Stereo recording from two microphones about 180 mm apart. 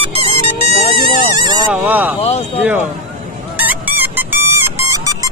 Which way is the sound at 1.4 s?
25° right (ahead or behind).